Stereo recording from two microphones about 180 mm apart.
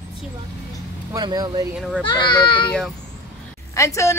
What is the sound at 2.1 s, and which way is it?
Speech, 25° left (ahead or behind).